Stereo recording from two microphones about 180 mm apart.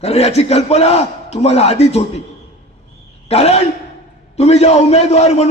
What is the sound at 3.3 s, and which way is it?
A man's voice, 35° left (ahead or behind).